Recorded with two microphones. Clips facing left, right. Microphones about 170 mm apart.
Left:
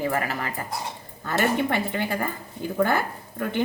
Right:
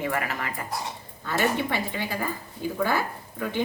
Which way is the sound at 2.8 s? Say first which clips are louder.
Right 1 dB; 55° left (ahead or behind).